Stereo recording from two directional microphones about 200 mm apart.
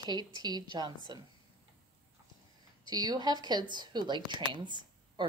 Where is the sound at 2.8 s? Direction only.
20° right (ahead or behind).